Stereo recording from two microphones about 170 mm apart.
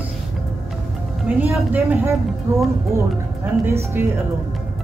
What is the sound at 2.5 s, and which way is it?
Speech, 15° right (ahead or behind).